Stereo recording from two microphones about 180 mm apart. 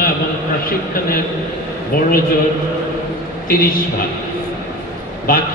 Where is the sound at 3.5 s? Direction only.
50° left (ahead or behind).